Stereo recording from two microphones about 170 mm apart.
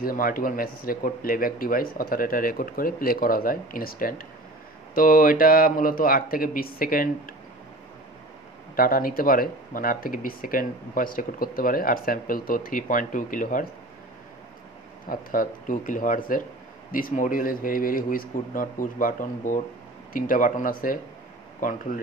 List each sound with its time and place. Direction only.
0.0 s speech: 55° left (ahead or behind)
8.7 s speech: 60° left (ahead or behind)
15.0 s speech: 50° left (ahead or behind)